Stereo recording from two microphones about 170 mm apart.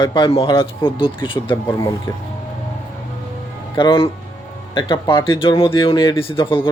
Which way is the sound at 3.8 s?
30° left (ahead or behind).